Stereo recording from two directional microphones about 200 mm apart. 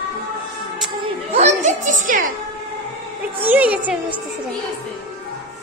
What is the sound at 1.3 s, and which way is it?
Children playing, 35° right (ahead or behind).